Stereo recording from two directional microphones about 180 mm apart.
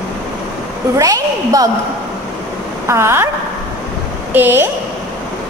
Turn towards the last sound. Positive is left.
turn(degrees=-10)  # may be behind; listen again after turning